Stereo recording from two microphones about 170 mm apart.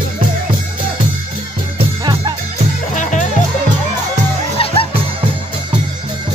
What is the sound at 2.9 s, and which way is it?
Music, 45° left (ahead or behind).